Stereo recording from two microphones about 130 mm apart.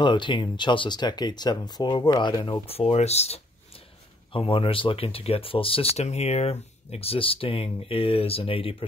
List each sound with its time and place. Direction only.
0.0 s speech: 35° left (ahead or behind)
2.6 s speech: 50° left (ahead or behind)
4.3 s speech: 45° left (ahead or behind)